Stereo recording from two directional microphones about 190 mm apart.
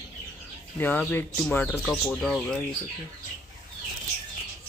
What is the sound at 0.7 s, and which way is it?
Speech, 10° left (ahead or behind).